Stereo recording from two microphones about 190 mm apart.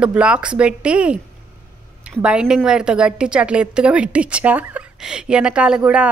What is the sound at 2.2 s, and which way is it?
Speech, 5° right (ahead or behind).